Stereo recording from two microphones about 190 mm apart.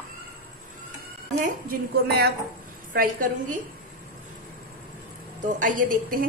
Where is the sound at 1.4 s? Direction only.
50° right (ahead or behind).